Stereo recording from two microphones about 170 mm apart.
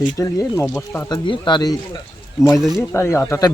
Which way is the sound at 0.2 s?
20° left (ahead or behind).